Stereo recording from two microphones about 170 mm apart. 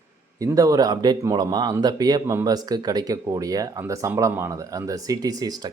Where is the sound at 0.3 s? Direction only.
20° right (ahead or behind).